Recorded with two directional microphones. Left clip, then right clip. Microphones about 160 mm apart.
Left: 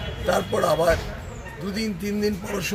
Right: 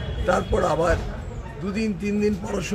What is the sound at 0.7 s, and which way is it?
Speech, 5° right (ahead or behind).